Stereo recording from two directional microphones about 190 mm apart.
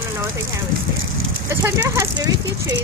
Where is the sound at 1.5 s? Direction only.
15° right (ahead or behind).